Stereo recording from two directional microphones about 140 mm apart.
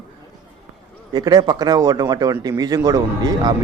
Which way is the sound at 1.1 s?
30° right (ahead or behind).